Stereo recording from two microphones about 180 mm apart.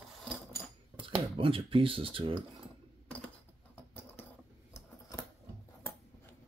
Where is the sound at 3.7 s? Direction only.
10° left (ahead or behind).